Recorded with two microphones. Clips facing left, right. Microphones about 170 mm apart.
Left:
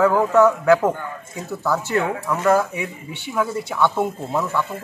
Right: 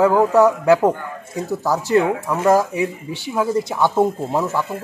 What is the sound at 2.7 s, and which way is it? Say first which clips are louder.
Speech: right 7 dB; 35° right (ahead or behind).